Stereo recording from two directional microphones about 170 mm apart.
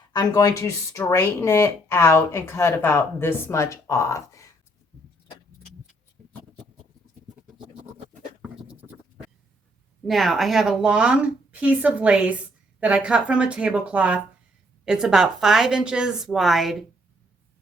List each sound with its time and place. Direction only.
0.1 s speech: 20° left (ahead or behind)
6.2 s a sound: 5° left (ahead or behind)
8.4 s goat: 10° right (ahead or behind)
10.1 s a woman's voice: centre (ahead or behind)